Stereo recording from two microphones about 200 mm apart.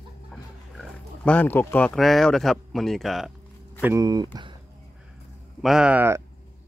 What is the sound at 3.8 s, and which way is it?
Speech, 15° right (ahead or behind).